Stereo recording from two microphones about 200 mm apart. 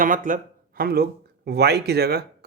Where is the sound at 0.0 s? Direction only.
40° right (ahead or behind).